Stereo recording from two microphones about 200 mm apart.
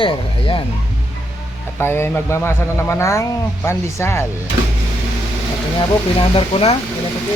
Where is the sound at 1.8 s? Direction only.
10° left (ahead or behind).